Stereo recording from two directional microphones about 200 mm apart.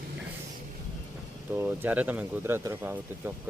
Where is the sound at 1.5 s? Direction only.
10° right (ahead or behind).